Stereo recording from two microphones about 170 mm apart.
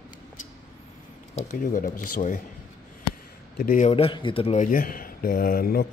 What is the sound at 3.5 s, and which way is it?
Speech, 60° left (ahead or behind).